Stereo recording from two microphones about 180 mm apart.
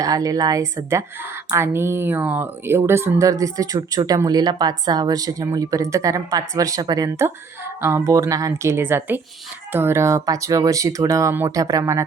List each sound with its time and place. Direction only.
0.0 s a woman's voice: 20° right (ahead or behind)